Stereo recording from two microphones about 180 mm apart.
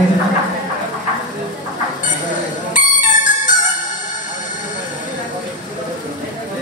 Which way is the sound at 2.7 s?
45° left (ahead or behind).